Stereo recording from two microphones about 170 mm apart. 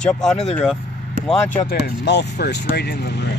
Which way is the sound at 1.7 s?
75° left (ahead or behind).